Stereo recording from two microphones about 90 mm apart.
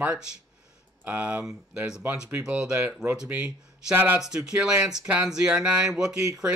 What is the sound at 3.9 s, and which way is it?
Speech, 20° right (ahead or behind).